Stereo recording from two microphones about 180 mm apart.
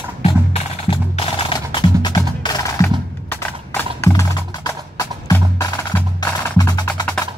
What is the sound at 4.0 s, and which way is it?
Music, 15° left (ahead or behind).